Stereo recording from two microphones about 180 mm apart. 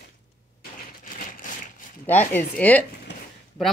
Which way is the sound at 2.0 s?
10° left (ahead or behind).